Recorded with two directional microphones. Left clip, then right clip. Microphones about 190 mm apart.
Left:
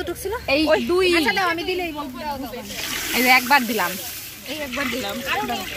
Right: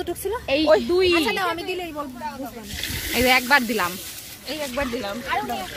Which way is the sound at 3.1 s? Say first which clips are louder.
Left 2 dB; centre (ahead or behind).